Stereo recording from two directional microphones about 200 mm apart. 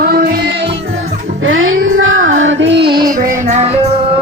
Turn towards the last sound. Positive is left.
turn(degrees=-30)  # may be behind; listen again after turning